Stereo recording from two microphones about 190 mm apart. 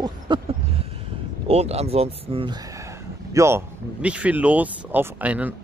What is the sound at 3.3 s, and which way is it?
Speech, 15° right (ahead or behind).